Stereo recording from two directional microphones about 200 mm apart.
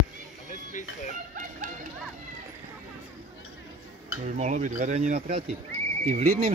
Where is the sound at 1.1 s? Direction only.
40° right (ahead or behind).